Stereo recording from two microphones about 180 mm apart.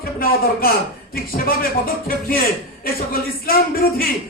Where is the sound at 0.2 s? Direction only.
55° left (ahead or behind).